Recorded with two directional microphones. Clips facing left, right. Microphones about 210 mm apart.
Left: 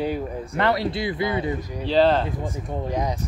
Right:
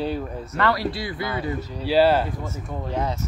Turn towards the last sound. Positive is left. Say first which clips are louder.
# left 1 dB
turn(degrees=15)  # may be behind; listen again after turning